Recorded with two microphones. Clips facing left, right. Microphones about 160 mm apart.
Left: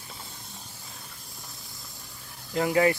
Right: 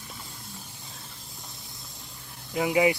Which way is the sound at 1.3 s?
20° right (ahead or behind).